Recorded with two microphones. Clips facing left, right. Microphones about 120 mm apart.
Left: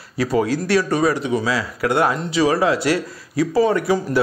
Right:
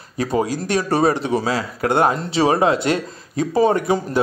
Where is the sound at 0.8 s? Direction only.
30° right (ahead or behind).